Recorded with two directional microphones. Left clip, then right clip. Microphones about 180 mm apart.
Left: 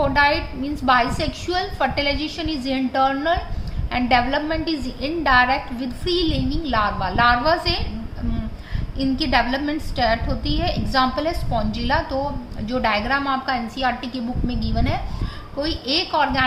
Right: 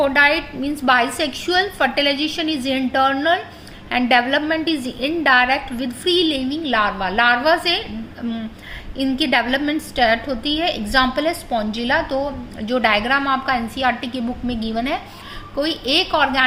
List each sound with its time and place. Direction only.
0.0 s a woman's voice: 30° right (ahead or behind)
9.0 s a woman's voice: 30° right (ahead or behind)